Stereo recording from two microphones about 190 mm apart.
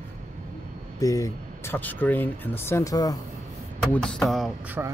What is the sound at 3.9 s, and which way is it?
Speech, 5° left (ahead or behind).